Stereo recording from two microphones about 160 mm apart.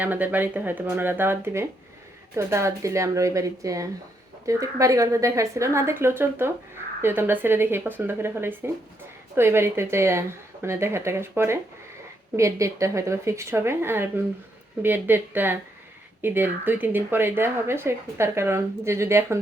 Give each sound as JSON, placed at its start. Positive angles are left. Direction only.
{"t": 0.0, "sound": "a woman's voice", "side_deg": -10}